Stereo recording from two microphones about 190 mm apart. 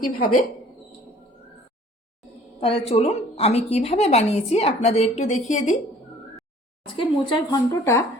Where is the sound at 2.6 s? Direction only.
30° left (ahead or behind).